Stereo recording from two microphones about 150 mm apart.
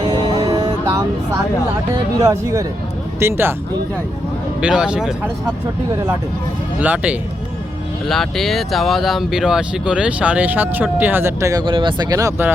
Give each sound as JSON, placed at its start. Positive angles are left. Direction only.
{"t": 0.1, "sound": "music", "side_deg": -25}
{"t": 2.2, "sound": "speech", "side_deg": -20}
{"t": 4.6, "sound": "speech", "side_deg": -5}
{"t": 6.7, "sound": "speech", "side_deg": -10}
{"t": 8.0, "sound": "speech", "side_deg": 0}
{"t": 11.6, "sound": "speech", "side_deg": -35}